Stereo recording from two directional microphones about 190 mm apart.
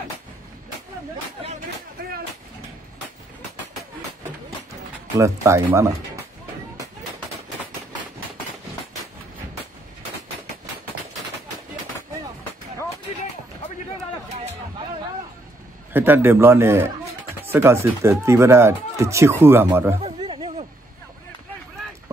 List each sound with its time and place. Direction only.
5.1 s speech: 15° right (ahead or behind)
15.9 s speech: 10° right (ahead or behind)
20.0 s a sound: 30° right (ahead or behind)